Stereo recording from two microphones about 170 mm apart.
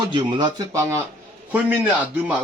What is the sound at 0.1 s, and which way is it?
Speech, 25° right (ahead or behind).